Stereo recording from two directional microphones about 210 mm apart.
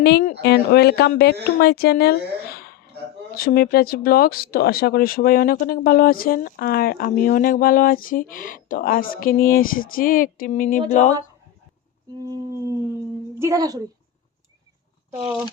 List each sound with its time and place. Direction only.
0.0 s a woman's voice: 45° left (ahead or behind)
12.2 s humming: 15° right (ahead or behind)